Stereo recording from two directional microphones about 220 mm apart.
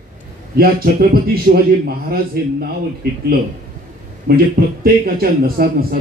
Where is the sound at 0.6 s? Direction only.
45° right (ahead or behind).